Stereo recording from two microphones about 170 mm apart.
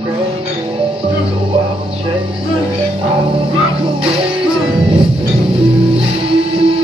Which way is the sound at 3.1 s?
30° right (ahead or behind).